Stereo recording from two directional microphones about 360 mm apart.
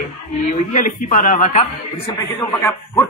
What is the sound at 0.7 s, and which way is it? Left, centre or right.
A man's voice, left.